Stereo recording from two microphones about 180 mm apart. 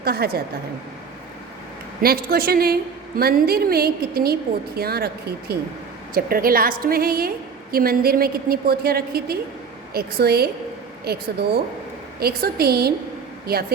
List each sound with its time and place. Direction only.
0.0 s a woman's voice: 60° right (ahead or behind)
2.0 s a woman's voice: 55° right (ahead or behind)